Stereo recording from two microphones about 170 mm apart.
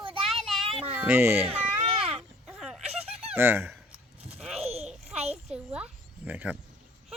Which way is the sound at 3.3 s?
15° right (ahead or behind).